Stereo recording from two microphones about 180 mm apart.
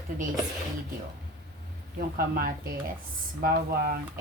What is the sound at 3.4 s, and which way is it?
Speech, 55° right (ahead or behind).